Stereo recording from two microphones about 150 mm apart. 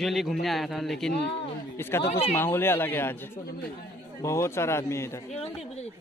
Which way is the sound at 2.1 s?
45° left (ahead or behind).